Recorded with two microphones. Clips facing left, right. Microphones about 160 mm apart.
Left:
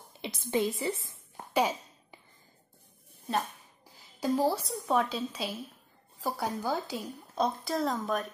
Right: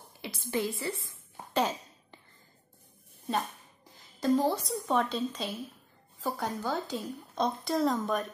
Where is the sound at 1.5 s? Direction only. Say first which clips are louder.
Left 1 dB; 10° left (ahead or behind).